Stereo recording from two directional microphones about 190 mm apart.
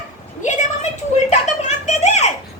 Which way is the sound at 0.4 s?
40° left (ahead or behind).